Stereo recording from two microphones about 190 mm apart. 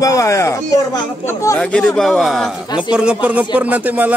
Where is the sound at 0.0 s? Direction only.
15° left (ahead or behind).